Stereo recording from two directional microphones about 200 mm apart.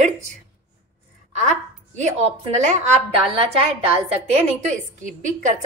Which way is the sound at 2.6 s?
35° right (ahead or behind).